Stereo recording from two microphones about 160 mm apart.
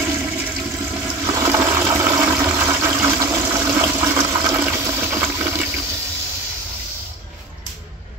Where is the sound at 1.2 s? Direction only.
20° right (ahead or behind).